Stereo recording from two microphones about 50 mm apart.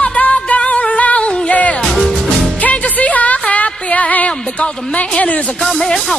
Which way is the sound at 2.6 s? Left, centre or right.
Left.